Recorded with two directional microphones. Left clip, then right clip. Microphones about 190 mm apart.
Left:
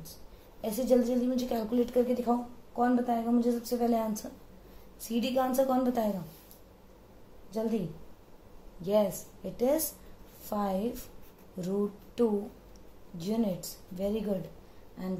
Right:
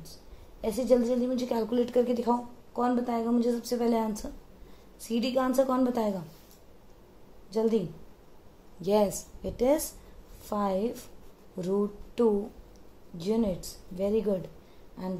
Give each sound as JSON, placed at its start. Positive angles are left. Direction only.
{"t": 0.6, "sound": "a woman's voice", "side_deg": -40}
{"t": 8.8, "sound": "a woman's voice", "side_deg": -55}